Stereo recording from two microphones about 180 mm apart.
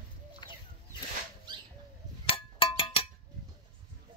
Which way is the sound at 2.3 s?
30° left (ahead or behind).